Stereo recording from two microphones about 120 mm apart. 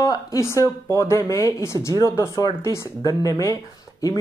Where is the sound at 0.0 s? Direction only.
30° left (ahead or behind).